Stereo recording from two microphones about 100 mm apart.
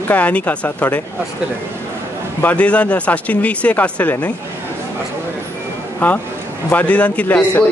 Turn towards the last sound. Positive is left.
turn(degrees=15)  # may be behind; listen again after turning